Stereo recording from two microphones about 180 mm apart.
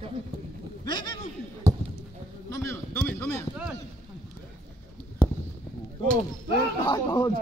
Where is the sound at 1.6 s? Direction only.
15° right (ahead or behind).